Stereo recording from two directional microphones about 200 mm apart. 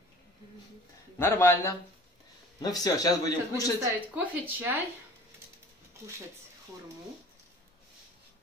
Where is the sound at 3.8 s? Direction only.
10° right (ahead or behind).